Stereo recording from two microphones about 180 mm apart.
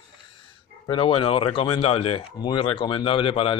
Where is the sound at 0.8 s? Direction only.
30° left (ahead or behind).